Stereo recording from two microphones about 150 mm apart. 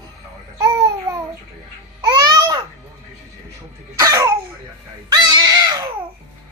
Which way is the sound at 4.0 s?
20° right (ahead or behind).